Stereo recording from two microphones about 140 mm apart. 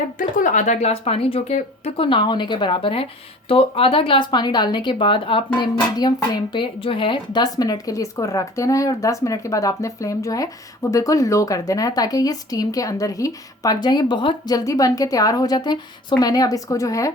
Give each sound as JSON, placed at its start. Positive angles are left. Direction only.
{"t": 0.2, "sound": "speech", "side_deg": 70}